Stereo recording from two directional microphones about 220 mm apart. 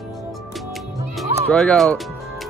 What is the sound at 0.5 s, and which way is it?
Music, centre (ahead or behind).